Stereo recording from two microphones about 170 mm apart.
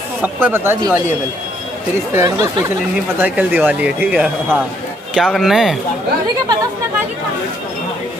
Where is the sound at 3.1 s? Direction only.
10° right (ahead or behind).